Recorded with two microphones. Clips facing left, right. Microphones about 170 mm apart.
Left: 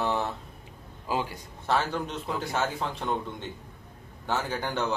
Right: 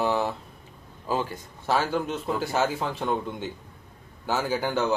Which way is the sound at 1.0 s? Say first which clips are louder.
Right 2 dB; 15° left (ahead or behind).